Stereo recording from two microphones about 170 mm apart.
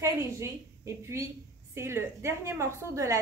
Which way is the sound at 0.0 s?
15° right (ahead or behind).